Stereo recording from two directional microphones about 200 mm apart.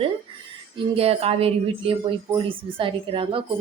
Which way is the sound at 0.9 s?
30° right (ahead or behind).